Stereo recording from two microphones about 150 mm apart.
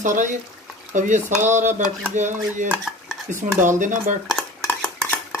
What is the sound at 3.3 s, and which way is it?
Speech, 60° right (ahead or behind).